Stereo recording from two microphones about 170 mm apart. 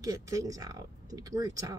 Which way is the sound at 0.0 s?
20° right (ahead or behind).